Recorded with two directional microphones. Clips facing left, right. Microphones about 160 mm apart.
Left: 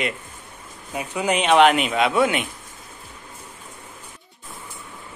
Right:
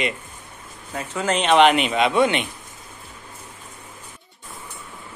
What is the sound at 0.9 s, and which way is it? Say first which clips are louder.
A man's voice: left 1 dB; 15° left (ahead or behind).